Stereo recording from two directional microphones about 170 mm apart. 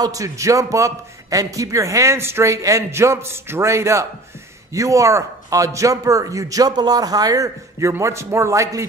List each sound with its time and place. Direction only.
0.0 s a man's voice: 20° right (ahead or behind)